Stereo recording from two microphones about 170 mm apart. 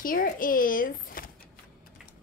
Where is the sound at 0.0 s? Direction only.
55° left (ahead or behind).